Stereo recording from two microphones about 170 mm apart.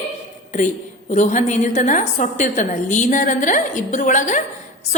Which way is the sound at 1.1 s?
45° left (ahead or behind).